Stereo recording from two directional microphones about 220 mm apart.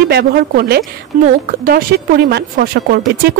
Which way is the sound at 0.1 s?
45° right (ahead or behind).